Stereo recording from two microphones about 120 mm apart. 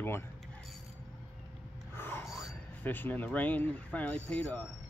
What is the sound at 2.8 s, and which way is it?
Speech, 15° left (ahead or behind).